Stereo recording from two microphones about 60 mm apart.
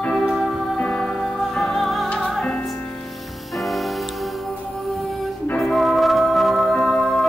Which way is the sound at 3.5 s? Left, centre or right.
Centre.